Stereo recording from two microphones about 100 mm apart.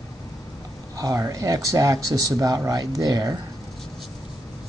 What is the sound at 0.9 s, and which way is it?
Speech, 30° right (ahead or behind).